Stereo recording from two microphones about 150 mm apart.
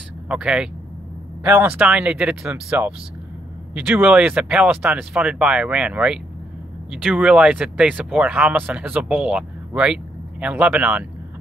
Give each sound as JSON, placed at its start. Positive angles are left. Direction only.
{"t": 0.3, "sound": "speech", "side_deg": -5}